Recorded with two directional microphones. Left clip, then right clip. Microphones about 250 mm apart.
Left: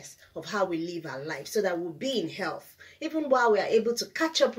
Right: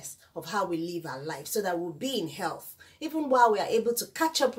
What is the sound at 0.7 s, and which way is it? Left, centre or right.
Speech, centre.